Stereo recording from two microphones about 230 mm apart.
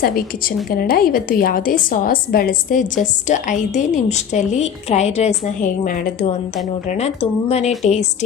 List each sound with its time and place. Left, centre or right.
0.0 s a woman's voice: left